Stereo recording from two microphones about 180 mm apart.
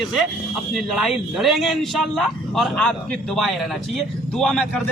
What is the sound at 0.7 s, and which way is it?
A man's voice, 5° right (ahead or behind).